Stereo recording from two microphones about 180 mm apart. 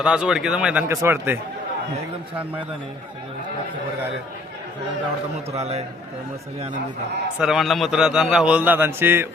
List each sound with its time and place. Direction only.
0.0 s a man's voice: 5° right (ahead or behind)
5.5 s a man's voice: 35° right (ahead or behind)
7.3 s a man's voice: 5° right (ahead or behind)